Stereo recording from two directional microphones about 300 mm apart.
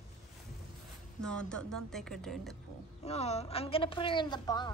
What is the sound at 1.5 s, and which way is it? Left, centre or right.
Speech, centre.